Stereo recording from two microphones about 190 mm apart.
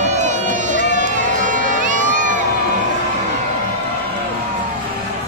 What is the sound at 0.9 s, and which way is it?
Crowd, 45° right (ahead or behind).